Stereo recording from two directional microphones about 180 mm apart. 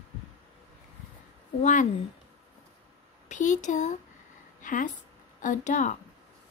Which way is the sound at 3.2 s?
45° left (ahead or behind).